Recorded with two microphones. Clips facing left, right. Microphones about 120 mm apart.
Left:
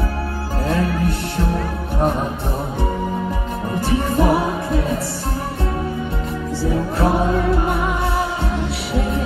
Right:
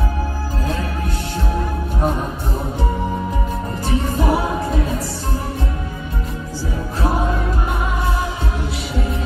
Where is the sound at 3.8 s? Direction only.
60° left (ahead or behind).